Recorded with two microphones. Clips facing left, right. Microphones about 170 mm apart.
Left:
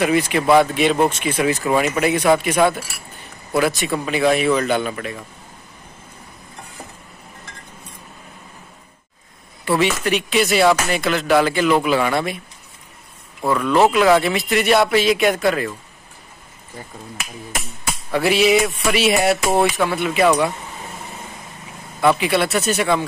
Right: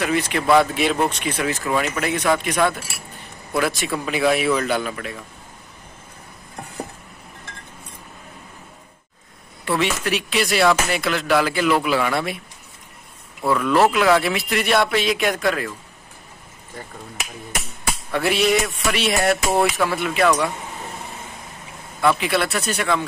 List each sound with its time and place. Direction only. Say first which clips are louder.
0.0 s speech: left 4 dB; 10° left (ahead or behind)
9.7 s speech: left 3 dB; centre (ahead or behind)
13.6 s speech: left 2 dB; centre (ahead or behind)
18.1 s speech: left 4 dB; centre (ahead or behind)
22.2 s speech: left 3 dB; centre (ahead or behind)